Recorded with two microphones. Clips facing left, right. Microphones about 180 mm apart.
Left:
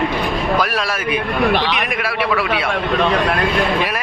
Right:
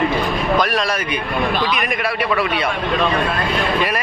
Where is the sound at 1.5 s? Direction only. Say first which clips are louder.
Left 2 dB; 70° left (ahead or behind).